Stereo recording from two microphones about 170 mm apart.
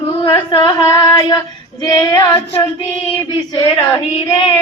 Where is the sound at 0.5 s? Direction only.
20° left (ahead or behind).